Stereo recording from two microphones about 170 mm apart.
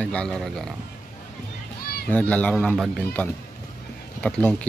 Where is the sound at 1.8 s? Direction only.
65° left (ahead or behind).